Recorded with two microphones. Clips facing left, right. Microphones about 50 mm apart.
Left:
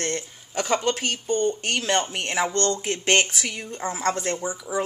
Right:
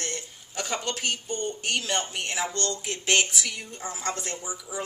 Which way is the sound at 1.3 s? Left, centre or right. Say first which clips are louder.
Left 7 dB; left.